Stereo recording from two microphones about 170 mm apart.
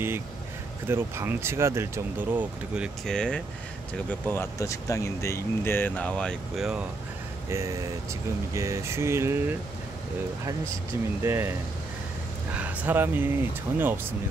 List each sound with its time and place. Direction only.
0.8 s speech: 15° right (ahead or behind)
3.1 s speech: 5° left (ahead or behind)
7.4 s speech: 15° right (ahead or behind)
11.2 s speech: 15° right (ahead or behind)
12.5 s speech: 10° right (ahead or behind)